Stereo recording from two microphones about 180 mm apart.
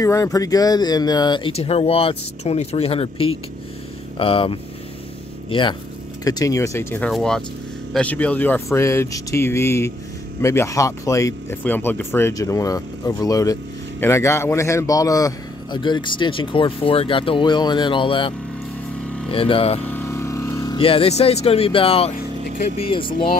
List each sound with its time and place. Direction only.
0.0 s speech: 20° left (ahead or behind)
7.1 s speech: centre (ahead or behind); by 18.3 s 30° left (ahead or behind)
19.3 s speech: 30° left (ahead or behind)
19.9 s vehicle: 15° left (ahead or behind); by 22.1 s 30° left (ahead or behind)
22.8 s speech: 30° left (ahead or behind)